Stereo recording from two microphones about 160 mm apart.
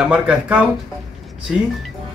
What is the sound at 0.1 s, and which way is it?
Speech, 10° right (ahead or behind).